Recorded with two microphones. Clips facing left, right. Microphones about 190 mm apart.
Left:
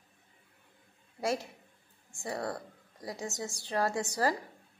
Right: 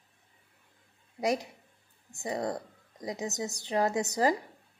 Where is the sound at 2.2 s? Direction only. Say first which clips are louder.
Right 3 dB; 20° right (ahead or behind).